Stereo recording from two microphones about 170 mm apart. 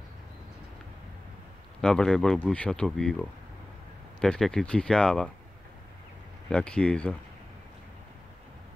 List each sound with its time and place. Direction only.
1.8 s speech: 5° left (ahead or behind)
6.5 s speech: 5° left (ahead or behind)